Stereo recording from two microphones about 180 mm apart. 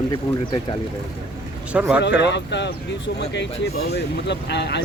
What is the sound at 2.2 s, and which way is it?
Speech, 75° left (ahead or behind).